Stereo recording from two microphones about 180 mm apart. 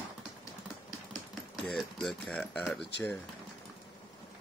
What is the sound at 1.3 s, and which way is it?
Speech, centre (ahead or behind).